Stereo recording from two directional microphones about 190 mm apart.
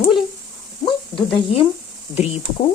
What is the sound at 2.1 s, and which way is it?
Speech, 30° left (ahead or behind).